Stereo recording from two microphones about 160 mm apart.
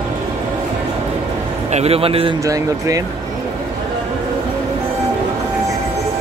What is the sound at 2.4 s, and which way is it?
Speech, 20° right (ahead or behind).